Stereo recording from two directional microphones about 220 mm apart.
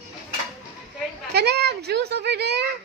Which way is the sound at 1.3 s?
45° right (ahead or behind).